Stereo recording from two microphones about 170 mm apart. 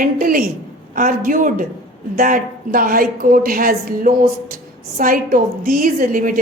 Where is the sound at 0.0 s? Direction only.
55° right (ahead or behind).